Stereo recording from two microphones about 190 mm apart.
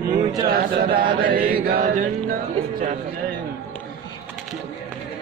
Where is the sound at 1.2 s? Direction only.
50° right (ahead or behind).